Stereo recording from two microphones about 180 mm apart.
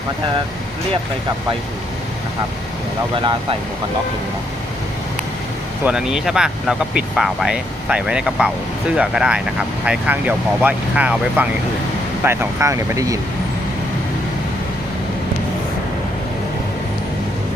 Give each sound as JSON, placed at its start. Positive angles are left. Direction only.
{"t": 5.8, "sound": "speech", "side_deg": -5}